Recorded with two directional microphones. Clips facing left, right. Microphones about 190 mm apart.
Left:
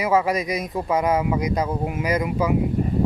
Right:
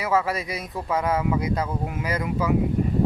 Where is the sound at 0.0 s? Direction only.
15° left (ahead or behind).